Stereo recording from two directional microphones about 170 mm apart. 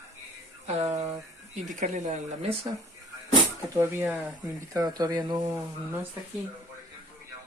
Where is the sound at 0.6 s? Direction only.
40° right (ahead or behind).